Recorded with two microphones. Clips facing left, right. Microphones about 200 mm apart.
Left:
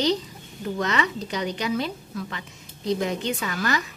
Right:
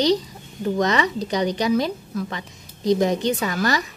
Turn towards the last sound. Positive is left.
turn(degrees=-35)  # may be behind; listen again after turning